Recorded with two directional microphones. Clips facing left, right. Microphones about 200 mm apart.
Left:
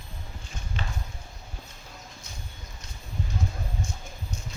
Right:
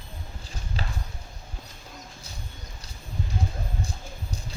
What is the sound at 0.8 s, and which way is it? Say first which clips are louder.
Clip-clop: right 1 dB; 35° right (ahead or behind).